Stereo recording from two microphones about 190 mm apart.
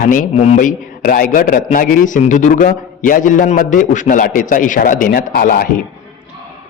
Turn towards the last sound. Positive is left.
turn(degrees=50)  # may be behind; listen again after turning